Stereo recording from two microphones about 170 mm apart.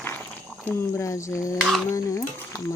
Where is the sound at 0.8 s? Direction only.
15° left (ahead or behind).